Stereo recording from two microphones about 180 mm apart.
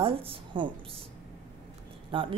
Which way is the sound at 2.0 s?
30° right (ahead or behind).